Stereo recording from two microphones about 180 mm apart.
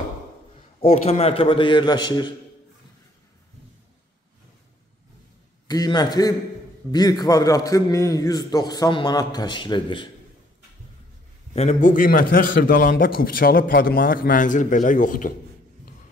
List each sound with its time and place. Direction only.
0.7 s a man's voice: 35° left (ahead or behind)
5.7 s a man's voice: 20° left (ahead or behind)
11.5 s a man's voice: 40° left (ahead or behind)